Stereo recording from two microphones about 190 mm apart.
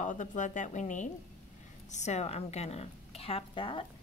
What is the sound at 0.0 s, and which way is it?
A woman's voice, 40° left (ahead or behind).